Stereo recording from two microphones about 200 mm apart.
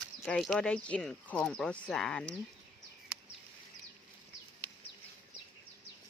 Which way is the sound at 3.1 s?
5° right (ahead or behind).